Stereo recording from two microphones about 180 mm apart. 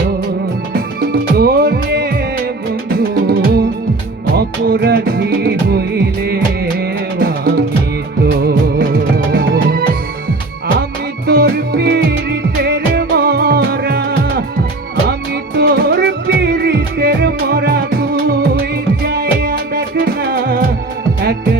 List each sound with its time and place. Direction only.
0.7 s music: 60° right (ahead or behind)
8.2 s music of bollywood: 60° right (ahead or behind)
11.3 s music: 60° right (ahead or behind)
15.5 s music: 65° right (ahead or behind)